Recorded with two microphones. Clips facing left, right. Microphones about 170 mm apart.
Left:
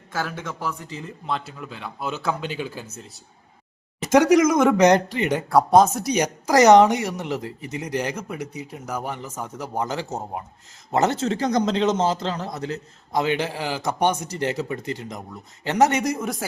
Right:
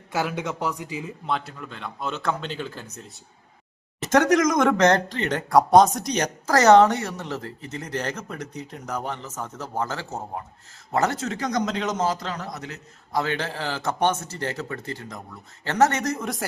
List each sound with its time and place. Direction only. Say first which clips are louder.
0.1 s a man's voice: right 3 dB; 15° right (ahead or behind); by 2.8 s 10° left (ahead or behind)
4.0 s a man's voice: left 3 dB; 10° left (ahead or behind); by 12.8 s 30° left (ahead or behind)
13.1 s speech: left 3 dB; 15° left (ahead or behind)